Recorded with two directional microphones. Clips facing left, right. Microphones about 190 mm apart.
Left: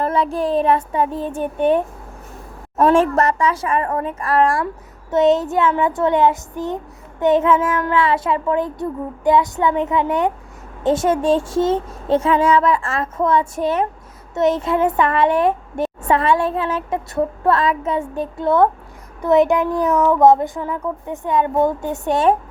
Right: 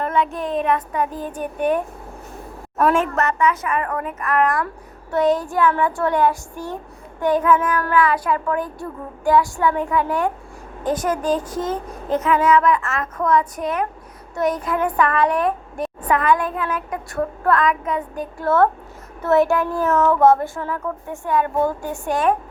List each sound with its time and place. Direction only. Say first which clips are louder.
0.0 s a woman's voice: left 3 dB; 35° left (ahead or behind)